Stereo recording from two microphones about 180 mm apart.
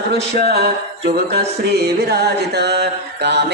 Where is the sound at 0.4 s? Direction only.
65° right (ahead or behind).